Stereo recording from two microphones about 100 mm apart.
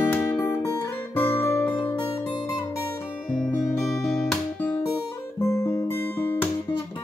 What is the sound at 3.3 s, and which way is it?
Guitar, 5° left (ahead or behind).